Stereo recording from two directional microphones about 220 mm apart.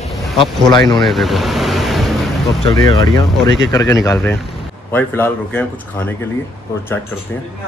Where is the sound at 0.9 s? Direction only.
Centre (ahead or behind).